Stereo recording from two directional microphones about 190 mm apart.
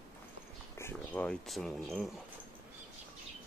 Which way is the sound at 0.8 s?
10° left (ahead or behind).